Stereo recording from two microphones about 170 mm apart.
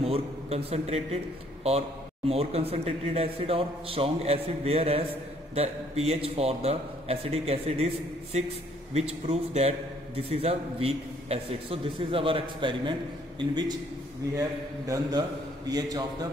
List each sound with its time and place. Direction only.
0.0 s a man's voice: 35° right (ahead or behind)
14.9 s a man's voice: 25° right (ahead or behind)